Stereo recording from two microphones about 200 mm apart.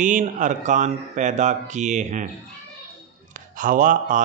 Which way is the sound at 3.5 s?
40° right (ahead or behind).